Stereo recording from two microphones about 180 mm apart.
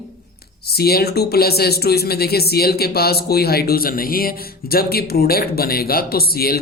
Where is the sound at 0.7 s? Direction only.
60° left (ahead or behind).